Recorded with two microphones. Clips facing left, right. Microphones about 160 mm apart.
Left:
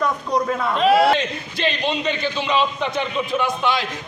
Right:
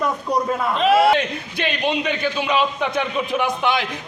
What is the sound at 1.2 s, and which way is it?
A man's voice, 10° right (ahead or behind).